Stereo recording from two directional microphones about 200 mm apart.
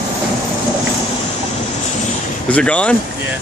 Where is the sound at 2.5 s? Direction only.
5° left (ahead or behind).